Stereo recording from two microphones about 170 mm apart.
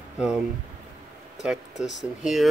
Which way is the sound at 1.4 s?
5° right (ahead or behind).